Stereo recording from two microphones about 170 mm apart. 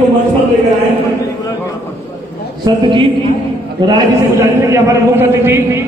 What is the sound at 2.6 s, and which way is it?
A man's voice, 30° right (ahead or behind).